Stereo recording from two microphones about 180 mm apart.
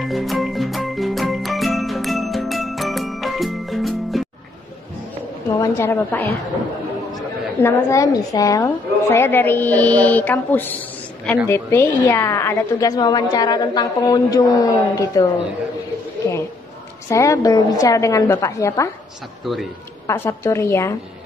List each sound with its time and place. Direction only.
0.0 s music: centre (ahead or behind)
5.6 s a woman's voice: 15° left (ahead or behind)
7.6 s a woman's voice: 15° left (ahead or behind)
17.1 s a woman's voice: 15° left (ahead or behind)
19.4 s a man's voice: centre (ahead or behind)
20.1 s a woman's voice: 15° left (ahead or behind)